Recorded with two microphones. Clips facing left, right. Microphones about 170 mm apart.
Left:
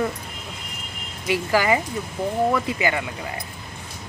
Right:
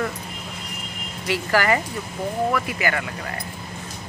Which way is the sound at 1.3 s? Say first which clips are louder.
Left 1 dB; 15° left (ahead or behind).